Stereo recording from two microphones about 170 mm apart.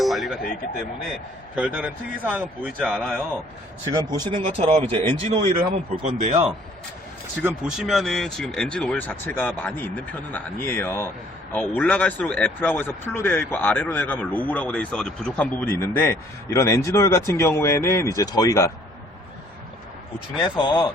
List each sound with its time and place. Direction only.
0.0 s a sound: centre (ahead or behind)
1.5 s speech: 5° right (ahead or behind)
3.9 s speech: 25° right (ahead or behind)
7.4 s speech: 5° right (ahead or behind); by 18.7 s 20° left (ahead or behind)
20.3 s speech: 25° left (ahead or behind)